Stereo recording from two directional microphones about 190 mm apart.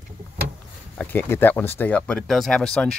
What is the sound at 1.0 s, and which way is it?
Speech, 10° left (ahead or behind).